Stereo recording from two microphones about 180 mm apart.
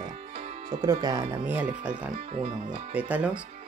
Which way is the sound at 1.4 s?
10° right (ahead or behind).